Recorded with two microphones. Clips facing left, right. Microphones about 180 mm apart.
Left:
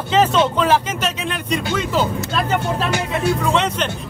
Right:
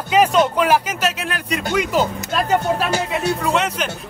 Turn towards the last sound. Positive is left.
turn(degrees=-5)  # may be behind; listen again after turning